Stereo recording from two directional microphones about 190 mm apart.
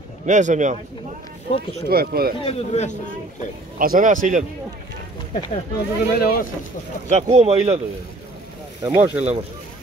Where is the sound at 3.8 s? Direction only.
45° right (ahead or behind).